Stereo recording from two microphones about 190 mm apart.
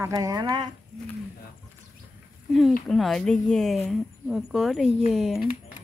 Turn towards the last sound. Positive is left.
turn(degrees=0)  # may be behind; listen again after turning